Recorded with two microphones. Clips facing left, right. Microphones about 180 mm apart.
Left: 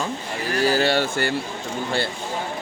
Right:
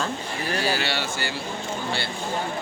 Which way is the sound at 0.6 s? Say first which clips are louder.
Left 10 dB; 45° left (ahead or behind).